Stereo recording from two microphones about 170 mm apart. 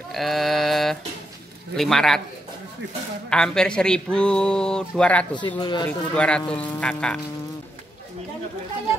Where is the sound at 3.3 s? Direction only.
5° left (ahead or behind).